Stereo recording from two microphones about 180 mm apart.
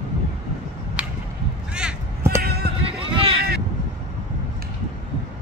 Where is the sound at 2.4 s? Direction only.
60° right (ahead or behind).